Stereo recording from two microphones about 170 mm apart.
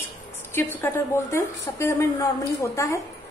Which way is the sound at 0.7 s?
15° left (ahead or behind).